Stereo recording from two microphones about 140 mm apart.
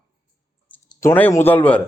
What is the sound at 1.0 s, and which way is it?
Speech, 15° left (ahead or behind).